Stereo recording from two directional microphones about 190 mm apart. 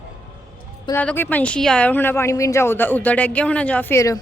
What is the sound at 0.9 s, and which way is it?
A woman's voice, 10° left (ahead or behind).